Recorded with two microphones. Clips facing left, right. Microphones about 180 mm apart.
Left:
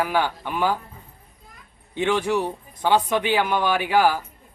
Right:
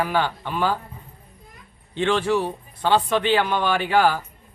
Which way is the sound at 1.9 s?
15° left (ahead or behind).